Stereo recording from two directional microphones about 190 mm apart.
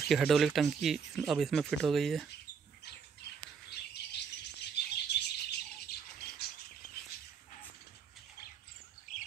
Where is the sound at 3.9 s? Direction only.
60° left (ahead or behind).